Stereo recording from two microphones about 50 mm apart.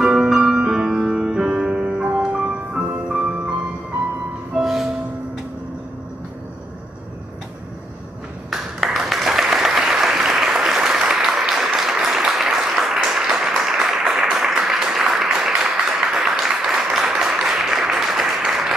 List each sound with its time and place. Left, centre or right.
0.0 s music: centre
4.6 s music: centre
8.5 s applause: centre
14.3 s a sound: centre